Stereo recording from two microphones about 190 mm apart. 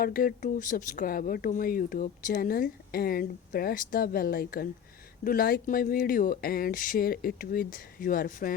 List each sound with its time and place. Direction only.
0.0 s speech: 50° left (ahead or behind)